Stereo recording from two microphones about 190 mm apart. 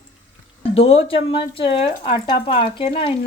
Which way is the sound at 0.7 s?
30° left (ahead or behind).